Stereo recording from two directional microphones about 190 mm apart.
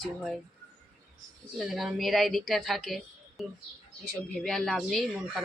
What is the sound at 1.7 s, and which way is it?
Speech, centre (ahead or behind).